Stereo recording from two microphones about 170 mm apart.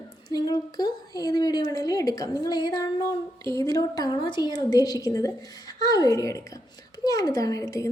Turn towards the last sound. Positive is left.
turn(degrees=20)  # may be behind; listen again after turning